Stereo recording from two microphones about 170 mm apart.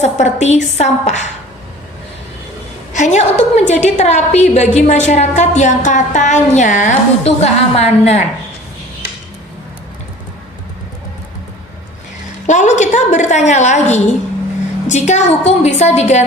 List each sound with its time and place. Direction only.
0.0 s a woman's voice: 45° left (ahead or behind)
2.9 s a woman's voice: 45° left (ahead or behind)
12.5 s a sound: 45° left (ahead or behind)
14.8 s a woman's voice: 45° left (ahead or behind)